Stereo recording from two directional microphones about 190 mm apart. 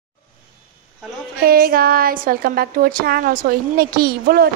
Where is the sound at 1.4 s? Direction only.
50° right (ahead or behind).